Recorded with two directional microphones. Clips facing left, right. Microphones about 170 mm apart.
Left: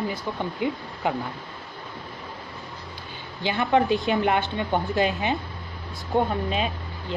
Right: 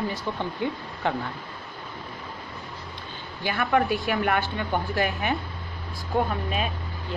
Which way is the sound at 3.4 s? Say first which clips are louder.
Left 2 dB; 20° left (ahead or behind).